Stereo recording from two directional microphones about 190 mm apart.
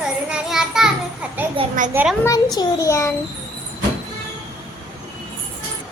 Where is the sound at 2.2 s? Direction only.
20° left (ahead or behind).